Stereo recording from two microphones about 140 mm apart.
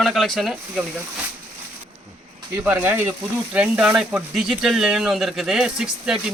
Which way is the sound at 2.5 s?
15° right (ahead or behind).